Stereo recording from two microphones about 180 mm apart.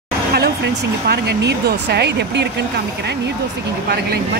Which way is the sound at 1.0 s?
60° right (ahead or behind).